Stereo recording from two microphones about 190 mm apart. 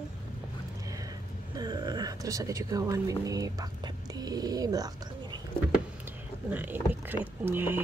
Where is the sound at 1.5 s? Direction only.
20° right (ahead or behind).